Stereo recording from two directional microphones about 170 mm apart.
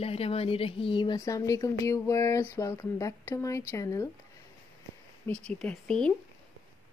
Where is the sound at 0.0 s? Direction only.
35° left (ahead or behind); by 4.1 s 20° left (ahead or behind).